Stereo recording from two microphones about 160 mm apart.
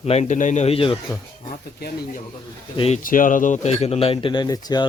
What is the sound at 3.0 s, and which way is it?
Speech, 55° left (ahead or behind).